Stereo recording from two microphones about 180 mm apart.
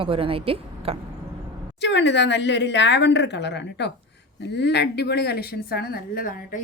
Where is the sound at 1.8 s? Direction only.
75° left (ahead or behind).